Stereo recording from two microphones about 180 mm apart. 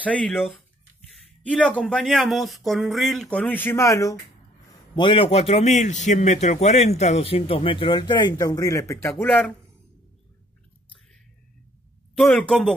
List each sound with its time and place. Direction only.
0.0 s speech: 5° left (ahead or behind)
4.9 s a man's voice: 30° left (ahead or behind)
9.1 s speech: 5° left (ahead or behind)
12.2 s speech: 5° left (ahead or behind)